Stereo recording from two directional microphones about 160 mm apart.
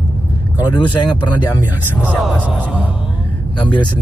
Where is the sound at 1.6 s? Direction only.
10° right (ahead or behind).